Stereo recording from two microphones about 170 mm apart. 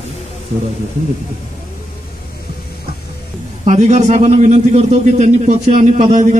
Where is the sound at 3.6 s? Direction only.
40° right (ahead or behind).